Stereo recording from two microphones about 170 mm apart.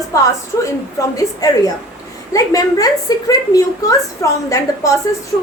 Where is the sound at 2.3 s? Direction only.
20° left (ahead or behind).